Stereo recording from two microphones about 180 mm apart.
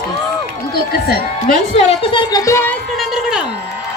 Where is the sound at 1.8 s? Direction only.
35° left (ahead or behind); by 3.6 s centre (ahead or behind).